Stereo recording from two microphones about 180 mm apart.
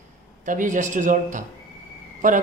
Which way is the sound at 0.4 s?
45° right (ahead or behind).